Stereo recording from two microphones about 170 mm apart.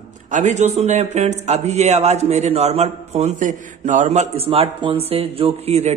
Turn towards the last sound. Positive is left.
turn(degrees=-40)  # may be behind; listen again after turning